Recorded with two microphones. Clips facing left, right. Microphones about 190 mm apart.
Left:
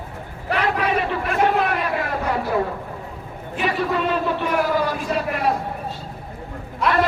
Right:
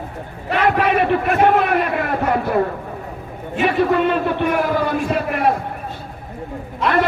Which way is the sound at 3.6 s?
55° right (ahead or behind).